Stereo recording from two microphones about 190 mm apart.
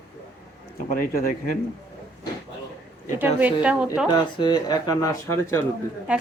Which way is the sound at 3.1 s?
10° right (ahead or behind).